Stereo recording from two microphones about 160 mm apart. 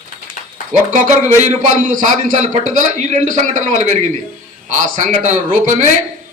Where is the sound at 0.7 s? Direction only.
50° right (ahead or behind).